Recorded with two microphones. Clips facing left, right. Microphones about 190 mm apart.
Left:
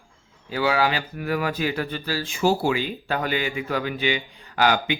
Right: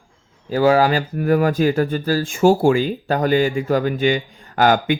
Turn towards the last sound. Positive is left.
turn(degrees=-45)  # may be behind; listen again after turning